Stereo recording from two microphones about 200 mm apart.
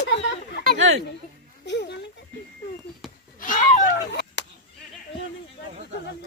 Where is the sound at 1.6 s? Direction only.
60° left (ahead or behind).